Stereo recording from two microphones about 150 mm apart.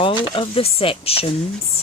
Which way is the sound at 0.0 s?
35° left (ahead or behind).